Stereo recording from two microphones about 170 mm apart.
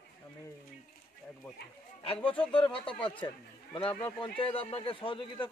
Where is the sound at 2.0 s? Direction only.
35° left (ahead or behind).